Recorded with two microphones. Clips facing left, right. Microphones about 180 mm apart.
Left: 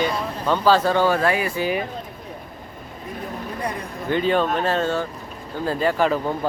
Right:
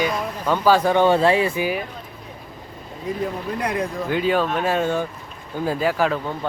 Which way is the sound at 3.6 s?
90° right.